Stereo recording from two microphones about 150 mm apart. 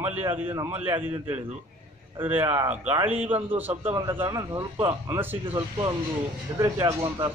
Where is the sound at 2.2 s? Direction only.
15° right (ahead or behind).